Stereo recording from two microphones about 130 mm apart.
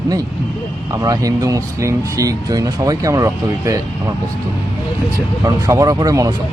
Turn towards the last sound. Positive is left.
turn(degrees=-30)  # may be behind; listen again after turning